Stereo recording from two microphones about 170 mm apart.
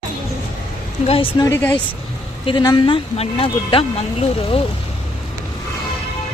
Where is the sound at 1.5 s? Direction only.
15° left (ahead or behind).